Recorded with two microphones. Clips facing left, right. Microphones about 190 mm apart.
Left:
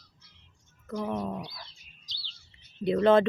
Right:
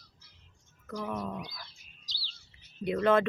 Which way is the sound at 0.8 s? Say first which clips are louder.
Left 4 dB; 25° left (ahead or behind).